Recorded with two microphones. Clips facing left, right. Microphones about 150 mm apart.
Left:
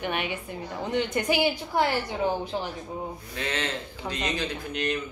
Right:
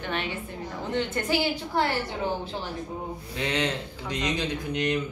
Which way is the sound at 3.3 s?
15° right (ahead or behind).